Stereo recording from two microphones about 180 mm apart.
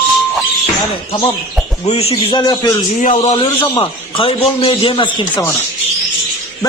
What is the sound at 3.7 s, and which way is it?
A man's voice, 30° left (ahead or behind).